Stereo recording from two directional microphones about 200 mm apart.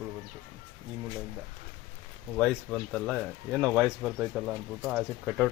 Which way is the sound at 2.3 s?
5° left (ahead or behind).